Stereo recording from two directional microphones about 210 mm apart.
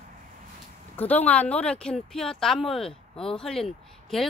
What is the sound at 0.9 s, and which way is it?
Speech, 10° left (ahead or behind).